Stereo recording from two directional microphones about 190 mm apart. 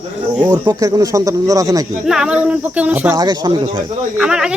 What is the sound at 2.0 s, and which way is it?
Speech, 5° right (ahead or behind).